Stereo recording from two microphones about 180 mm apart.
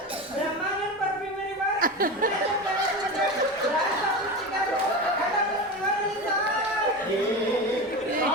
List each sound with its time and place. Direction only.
1.8 s speech: 50° right (ahead or behind)